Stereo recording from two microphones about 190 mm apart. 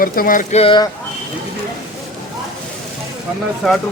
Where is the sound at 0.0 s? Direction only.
50° left (ahead or behind).